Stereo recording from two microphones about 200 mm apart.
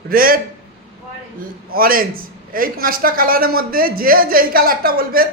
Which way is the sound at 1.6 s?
45° right (ahead or behind).